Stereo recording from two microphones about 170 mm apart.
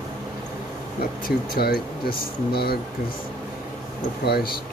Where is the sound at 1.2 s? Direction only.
65° left (ahead or behind).